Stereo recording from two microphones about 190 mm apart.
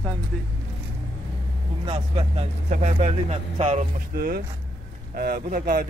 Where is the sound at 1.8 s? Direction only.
25° right (ahead or behind).